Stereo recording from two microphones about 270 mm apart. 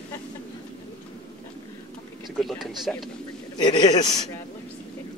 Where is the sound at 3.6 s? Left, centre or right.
Centre.